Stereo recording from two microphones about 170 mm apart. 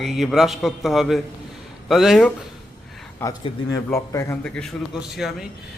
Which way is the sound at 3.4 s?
20° left (ahead or behind).